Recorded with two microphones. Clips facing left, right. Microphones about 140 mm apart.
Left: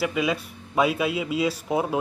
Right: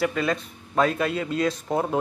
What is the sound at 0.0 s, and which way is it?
Speech, 10° left (ahead or behind).